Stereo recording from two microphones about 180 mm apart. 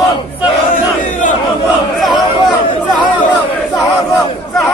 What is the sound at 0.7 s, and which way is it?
Crowd, 45° left (ahead or behind).